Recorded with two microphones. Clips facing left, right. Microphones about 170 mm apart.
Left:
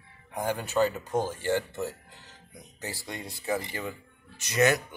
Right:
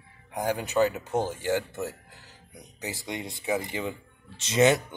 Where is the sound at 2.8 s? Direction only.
20° right (ahead or behind).